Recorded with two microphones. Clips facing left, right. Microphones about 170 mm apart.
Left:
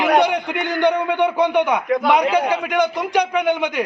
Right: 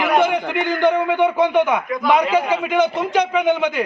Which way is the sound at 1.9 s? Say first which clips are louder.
Left 2 dB; 70° left (ahead or behind).